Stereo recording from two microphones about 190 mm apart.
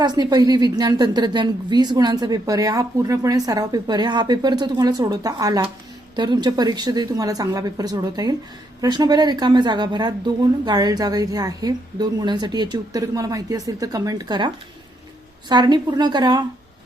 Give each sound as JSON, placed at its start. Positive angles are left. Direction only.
{"t": 0.0, "sound": "speech", "side_deg": -20}